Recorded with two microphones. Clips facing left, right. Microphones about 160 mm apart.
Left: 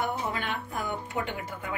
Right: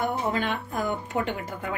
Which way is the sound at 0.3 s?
45° right (ahead or behind).